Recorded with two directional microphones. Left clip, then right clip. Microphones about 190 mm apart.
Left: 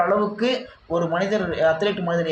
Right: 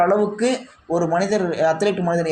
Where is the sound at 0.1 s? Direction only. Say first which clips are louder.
Right 2 dB; 25° right (ahead or behind).